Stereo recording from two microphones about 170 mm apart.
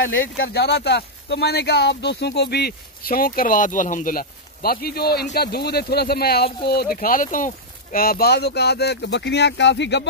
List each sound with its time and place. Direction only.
0.5 s speech: 75° left (ahead or behind); by 10.0 s 90° left